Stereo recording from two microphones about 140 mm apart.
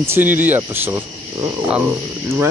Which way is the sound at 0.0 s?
15° right (ahead or behind).